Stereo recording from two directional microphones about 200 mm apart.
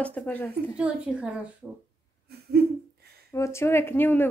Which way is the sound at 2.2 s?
50° right (ahead or behind).